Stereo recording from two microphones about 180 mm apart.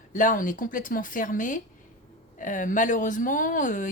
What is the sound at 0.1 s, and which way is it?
Speech, 45° left (ahead or behind).